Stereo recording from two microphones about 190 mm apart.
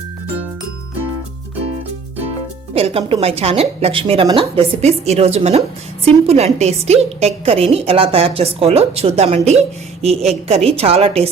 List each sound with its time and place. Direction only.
2.7 s a woman's voice: 30° right (ahead or behind)